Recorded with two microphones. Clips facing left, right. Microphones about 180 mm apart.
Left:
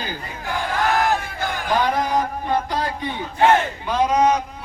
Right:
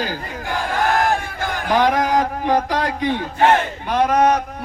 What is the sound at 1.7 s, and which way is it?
A man's voice, 90° right.